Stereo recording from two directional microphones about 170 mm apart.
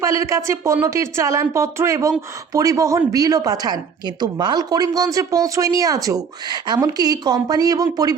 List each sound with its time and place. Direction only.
0.0 s a woman's voice: 20° right (ahead or behind)